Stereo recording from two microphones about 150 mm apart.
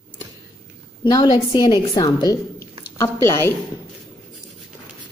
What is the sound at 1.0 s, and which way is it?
A woman's voice, 25° left (ahead or behind).